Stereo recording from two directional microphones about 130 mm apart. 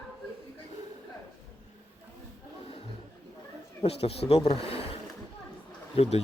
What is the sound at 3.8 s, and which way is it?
Speech, 50° left (ahead or behind).